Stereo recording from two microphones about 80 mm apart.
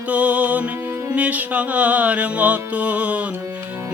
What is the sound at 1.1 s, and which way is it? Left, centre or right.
Music, centre.